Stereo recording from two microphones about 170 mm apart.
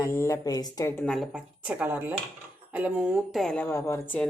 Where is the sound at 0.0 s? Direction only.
15° left (ahead or behind).